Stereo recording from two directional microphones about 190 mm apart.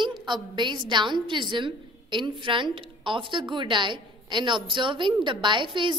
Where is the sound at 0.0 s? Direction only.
25° right (ahead or behind).